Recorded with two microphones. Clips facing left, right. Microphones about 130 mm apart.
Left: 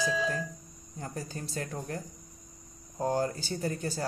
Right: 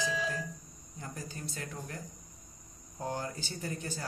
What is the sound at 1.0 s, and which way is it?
Speech, 40° left (ahead or behind).